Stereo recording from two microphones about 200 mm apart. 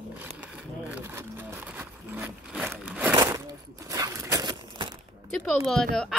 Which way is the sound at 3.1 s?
15° right (ahead or behind).